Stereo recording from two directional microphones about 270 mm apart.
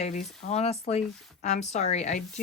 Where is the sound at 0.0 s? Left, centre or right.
Left.